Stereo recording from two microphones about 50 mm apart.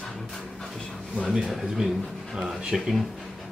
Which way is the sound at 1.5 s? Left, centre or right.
Centre.